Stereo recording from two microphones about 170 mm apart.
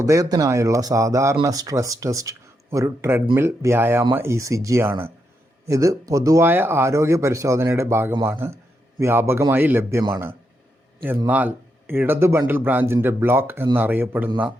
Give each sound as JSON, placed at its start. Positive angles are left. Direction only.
{"t": 0.0, "sound": "speech", "side_deg": -20}